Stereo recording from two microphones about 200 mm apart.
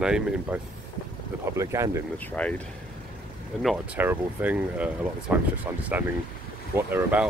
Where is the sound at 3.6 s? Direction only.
5° right (ahead or behind).